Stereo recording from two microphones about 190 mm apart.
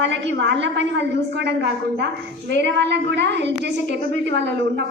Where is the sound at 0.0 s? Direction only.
70° right (ahead or behind).